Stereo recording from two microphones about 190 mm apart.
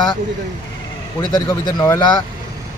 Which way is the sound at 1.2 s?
20° left (ahead or behind).